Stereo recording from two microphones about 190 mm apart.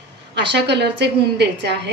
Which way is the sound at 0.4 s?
65° right (ahead or behind).